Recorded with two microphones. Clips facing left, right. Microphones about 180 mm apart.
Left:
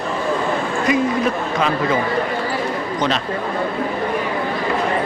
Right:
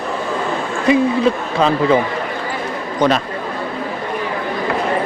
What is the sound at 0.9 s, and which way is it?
Speech, 30° right (ahead or behind).